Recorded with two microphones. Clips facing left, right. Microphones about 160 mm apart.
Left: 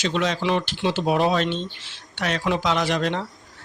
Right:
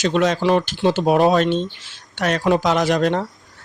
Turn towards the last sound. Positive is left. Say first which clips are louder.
# right 5 dB
turn(degrees=-45)  # may be behind; listen again after turning